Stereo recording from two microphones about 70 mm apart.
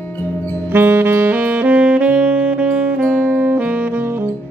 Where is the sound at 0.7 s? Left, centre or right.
Right.